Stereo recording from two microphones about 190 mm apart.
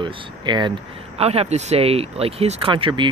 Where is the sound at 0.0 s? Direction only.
25° right (ahead or behind).